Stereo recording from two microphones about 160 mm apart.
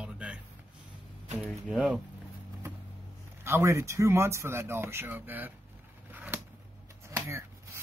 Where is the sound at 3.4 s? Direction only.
15° right (ahead or behind).